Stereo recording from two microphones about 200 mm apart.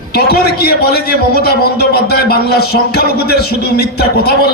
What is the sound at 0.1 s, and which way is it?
A man's voice, 50° left (ahead or behind).